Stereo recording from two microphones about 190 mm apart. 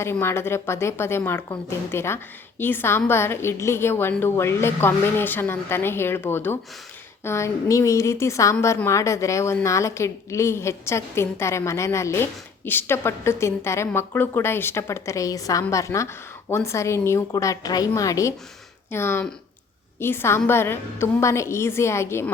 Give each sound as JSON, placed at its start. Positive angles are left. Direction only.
{"t": 0.0, "sound": "a woman's voice", "side_deg": 15}